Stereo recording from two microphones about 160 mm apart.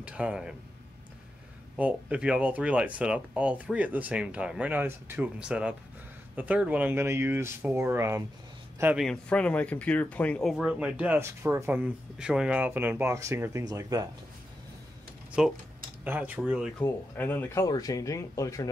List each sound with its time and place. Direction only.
0.0 s speech: 5° right (ahead or behind)
1.8 s speech: 10° right (ahead or behind)
8.9 s speech: 5° left (ahead or behind); by 14.0 s 20° right (ahead or behind)
15.4 s speech: 5° right (ahead or behind)
16.8 s speech: 10° left (ahead or behind)